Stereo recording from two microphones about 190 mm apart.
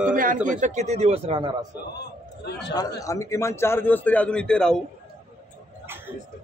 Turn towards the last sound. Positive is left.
turn(degrees=5)  # may be behind; listen again after turning